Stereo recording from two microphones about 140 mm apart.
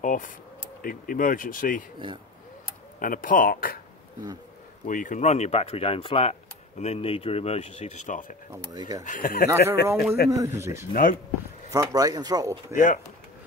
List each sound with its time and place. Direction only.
0.0 s speech: 70° left (ahead or behind)
3.0 s speech: 75° left (ahead or behind)
4.8 s speech: 70° left (ahead or behind)
8.5 s speech: 25° right (ahead or behind)
9.0 s speech: 70° left (ahead or behind)
9.5 s speech: 20° right (ahead or behind)
10.9 s speech: 70° left (ahead or behind)
11.7 s speech: 25° right (ahead or behind)
12.7 s speech: 65° left (ahead or behind)